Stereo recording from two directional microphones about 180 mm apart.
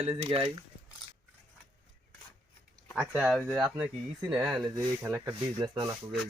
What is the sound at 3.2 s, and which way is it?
Speech, 5° right (ahead or behind).